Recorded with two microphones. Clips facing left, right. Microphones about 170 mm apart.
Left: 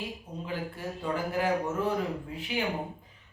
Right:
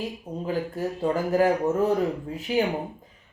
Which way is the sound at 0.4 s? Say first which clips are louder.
Right 8 dB; 40° right (ahead or behind).